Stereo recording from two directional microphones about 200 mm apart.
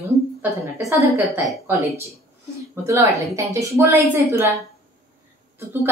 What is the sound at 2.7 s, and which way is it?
A woman's voice, 15° right (ahead or behind).